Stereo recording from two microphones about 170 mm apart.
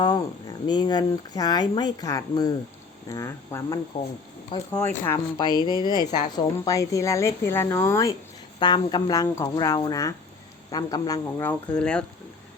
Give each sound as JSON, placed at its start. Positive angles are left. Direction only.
{"t": 0.7, "sound": "speech", "side_deg": 25}
{"t": 11.8, "sound": "speech", "side_deg": 5}